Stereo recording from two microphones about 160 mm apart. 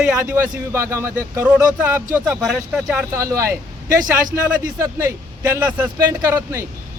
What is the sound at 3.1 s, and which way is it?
Speech, 20° right (ahead or behind).